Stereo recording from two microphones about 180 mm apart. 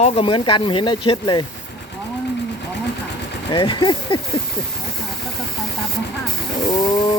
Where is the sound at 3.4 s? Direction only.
25° left (ahead or behind).